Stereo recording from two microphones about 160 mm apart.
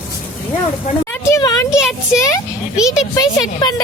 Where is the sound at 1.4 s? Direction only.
20° left (ahead or behind).